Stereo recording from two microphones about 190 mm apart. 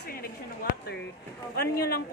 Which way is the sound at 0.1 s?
50° left (ahead or behind).